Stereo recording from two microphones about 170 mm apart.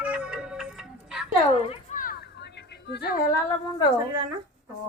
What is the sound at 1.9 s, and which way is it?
Children playing, 55° left (ahead or behind).